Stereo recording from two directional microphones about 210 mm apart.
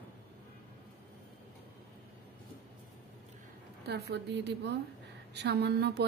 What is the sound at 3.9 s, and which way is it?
A woman's voice, 55° right (ahead or behind).